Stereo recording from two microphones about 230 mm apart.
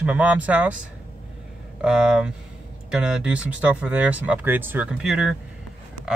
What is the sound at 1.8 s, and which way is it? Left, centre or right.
Speech, centre.